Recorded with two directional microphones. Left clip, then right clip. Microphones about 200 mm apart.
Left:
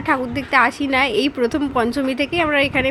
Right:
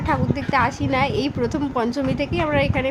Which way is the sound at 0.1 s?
10° left (ahead or behind).